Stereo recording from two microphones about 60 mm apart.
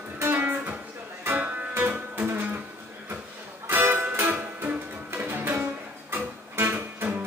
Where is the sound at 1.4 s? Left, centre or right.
Right.